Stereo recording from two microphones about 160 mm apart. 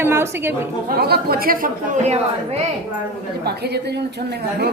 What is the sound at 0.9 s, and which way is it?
A woman's voice, 80° right.